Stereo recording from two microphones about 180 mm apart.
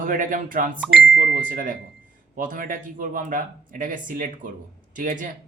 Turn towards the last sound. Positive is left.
turn(degrees=-45)  # may be behind; listen again after turning